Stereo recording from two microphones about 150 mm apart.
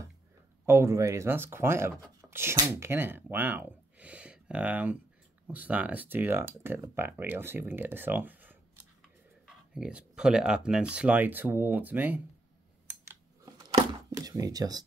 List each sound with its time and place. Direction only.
0.7 s speech: 20° right (ahead or behind)
14.1 s speech: 25° right (ahead or behind)